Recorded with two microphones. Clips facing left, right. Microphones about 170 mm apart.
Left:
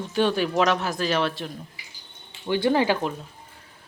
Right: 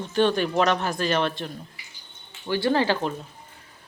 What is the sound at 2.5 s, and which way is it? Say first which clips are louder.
Speech: left 1 dB; 20° left (ahead or behind).